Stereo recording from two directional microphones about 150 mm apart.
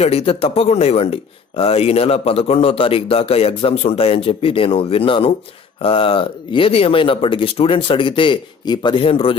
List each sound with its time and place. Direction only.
0.0 s speech: 40° left (ahead or behind)